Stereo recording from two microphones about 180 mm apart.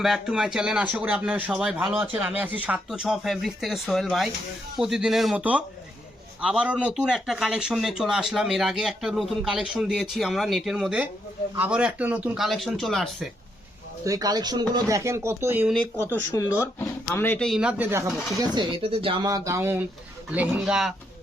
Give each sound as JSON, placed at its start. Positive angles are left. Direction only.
{"t": 0.0, "sound": "speech", "side_deg": 0}
{"t": 14.0, "sound": "speech", "side_deg": -20}
{"t": 16.3, "sound": "speech", "side_deg": 15}
{"t": 18.3, "sound": "speech", "side_deg": -25}